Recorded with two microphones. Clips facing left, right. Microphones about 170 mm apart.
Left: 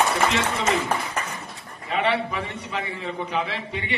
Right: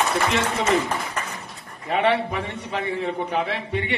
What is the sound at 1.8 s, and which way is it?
A man's voice, 55° right (ahead or behind).